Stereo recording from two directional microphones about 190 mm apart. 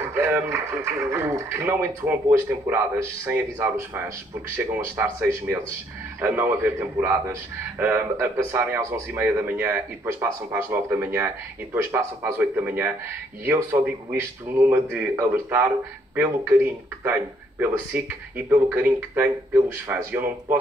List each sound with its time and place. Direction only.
0.1 s speech: 15° right (ahead or behind)